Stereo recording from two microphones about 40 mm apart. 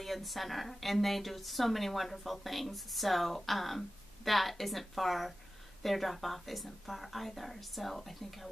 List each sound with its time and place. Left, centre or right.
0.0 s a woman's voice: centre